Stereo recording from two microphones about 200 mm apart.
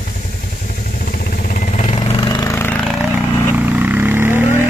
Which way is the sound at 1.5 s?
40° left (ahead or behind).